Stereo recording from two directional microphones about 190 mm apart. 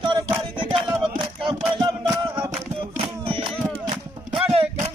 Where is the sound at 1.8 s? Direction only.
25° right (ahead or behind).